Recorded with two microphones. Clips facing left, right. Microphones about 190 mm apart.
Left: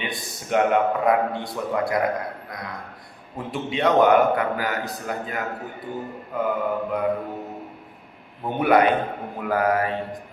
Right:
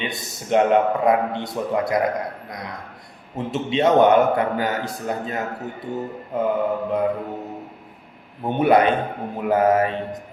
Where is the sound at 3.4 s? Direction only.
25° right (ahead or behind).